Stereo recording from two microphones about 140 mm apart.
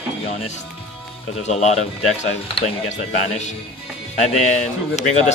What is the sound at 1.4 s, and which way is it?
Speech, 55° left (ahead or behind).